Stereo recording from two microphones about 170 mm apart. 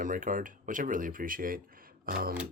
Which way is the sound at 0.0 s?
50° right (ahead or behind).